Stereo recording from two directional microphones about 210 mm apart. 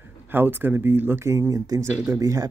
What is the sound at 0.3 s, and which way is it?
Speech, 10° right (ahead or behind).